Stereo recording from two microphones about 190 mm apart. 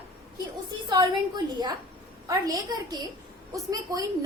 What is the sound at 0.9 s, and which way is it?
A woman's voice, 20° right (ahead or behind).